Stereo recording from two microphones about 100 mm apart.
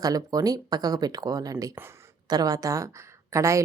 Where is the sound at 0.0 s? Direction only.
40° right (ahead or behind).